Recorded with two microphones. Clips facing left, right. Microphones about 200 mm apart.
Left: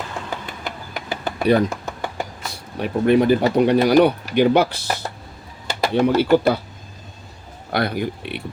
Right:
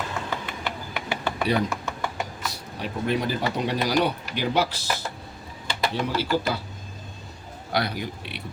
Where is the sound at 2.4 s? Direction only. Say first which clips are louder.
Left 5 dB; 55° left (ahead or behind).